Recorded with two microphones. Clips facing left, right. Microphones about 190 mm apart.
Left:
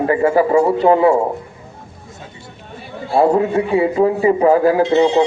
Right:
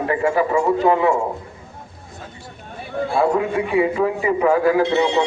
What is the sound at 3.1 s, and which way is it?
A man's voice, 30° left (ahead or behind).